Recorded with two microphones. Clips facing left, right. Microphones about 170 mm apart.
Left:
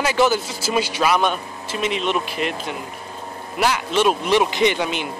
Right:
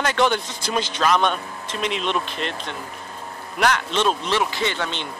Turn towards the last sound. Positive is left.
turn(degrees=10)  # may be behind; listen again after turning